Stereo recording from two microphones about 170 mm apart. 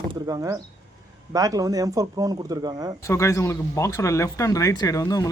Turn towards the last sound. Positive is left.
turn(degrees=20)  # may be behind; listen again after turning